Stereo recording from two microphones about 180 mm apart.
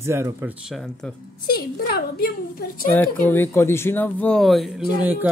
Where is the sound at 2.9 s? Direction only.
10° left (ahead or behind); by 5.3 s 10° right (ahead or behind).